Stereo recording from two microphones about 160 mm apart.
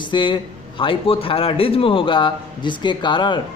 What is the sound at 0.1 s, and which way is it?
A man's voice, 30° left (ahead or behind).